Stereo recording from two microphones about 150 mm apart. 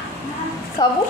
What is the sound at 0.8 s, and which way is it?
Speech, 25° left (ahead or behind).